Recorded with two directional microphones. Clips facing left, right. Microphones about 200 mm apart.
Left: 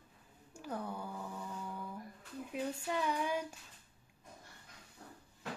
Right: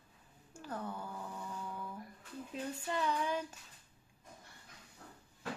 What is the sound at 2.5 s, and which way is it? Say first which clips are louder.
Female singing: left 2 dB; 10° left (ahead or behind).